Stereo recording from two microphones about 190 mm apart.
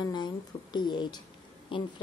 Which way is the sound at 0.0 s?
20° left (ahead or behind).